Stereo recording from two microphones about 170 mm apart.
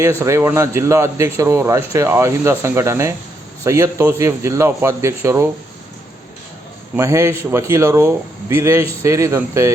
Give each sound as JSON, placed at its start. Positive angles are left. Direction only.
{"t": 0.2, "sound": "speech", "side_deg": -15}
{"t": 6.9, "sound": "speech", "side_deg": -15}